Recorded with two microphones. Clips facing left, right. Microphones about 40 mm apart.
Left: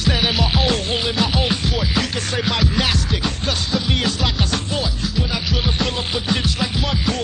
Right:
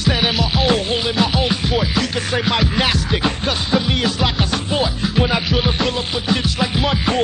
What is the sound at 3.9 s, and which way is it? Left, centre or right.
Music, centre.